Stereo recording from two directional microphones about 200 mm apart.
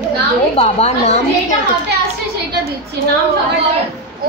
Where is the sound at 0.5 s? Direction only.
30° left (ahead or behind).